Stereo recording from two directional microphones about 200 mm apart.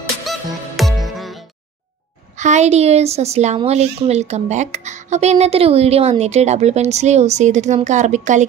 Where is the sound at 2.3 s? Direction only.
35° right (ahead or behind).